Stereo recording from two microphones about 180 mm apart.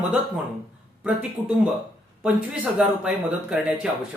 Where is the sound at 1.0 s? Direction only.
5° right (ahead or behind).